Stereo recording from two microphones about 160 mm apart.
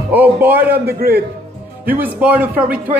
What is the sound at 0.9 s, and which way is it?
Speech, 75° right (ahead or behind).